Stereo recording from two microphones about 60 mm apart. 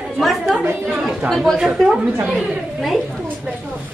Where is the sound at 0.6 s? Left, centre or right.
Right.